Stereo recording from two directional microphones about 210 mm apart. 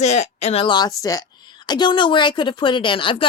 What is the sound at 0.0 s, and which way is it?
A woman's voice, 30° left (ahead or behind).